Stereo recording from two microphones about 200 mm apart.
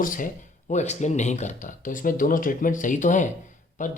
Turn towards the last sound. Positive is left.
turn(degrees=40)  # may be behind; listen again after turning